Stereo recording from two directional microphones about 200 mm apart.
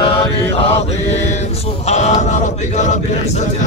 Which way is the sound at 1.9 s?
35° left (ahead or behind).